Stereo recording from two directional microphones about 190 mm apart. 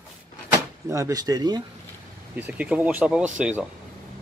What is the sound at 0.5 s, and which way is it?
Speech, 15° right (ahead or behind).